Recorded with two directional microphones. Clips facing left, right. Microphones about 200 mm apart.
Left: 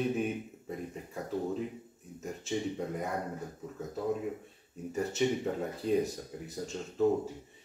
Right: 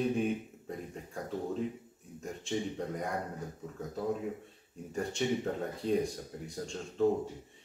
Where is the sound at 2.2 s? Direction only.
5° left (ahead or behind).